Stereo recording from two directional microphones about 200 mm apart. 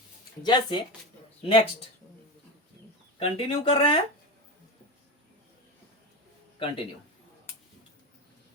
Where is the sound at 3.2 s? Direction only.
30° left (ahead or behind).